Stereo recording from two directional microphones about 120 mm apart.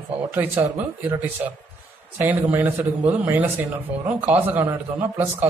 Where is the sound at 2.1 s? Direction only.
15° right (ahead or behind).